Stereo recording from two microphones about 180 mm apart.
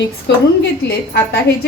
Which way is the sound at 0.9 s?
65° left (ahead or behind).